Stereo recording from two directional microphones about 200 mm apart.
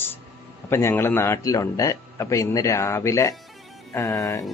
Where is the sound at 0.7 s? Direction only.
10° left (ahead or behind).